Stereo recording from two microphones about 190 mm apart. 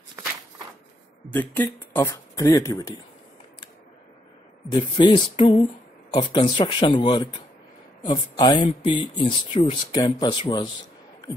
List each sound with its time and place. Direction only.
1.3 s speech: 10° left (ahead or behind)
4.6 s speech: 25° left (ahead or behind)